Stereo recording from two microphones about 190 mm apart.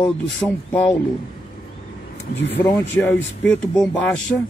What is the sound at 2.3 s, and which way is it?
Speech, 65° left (ahead or behind).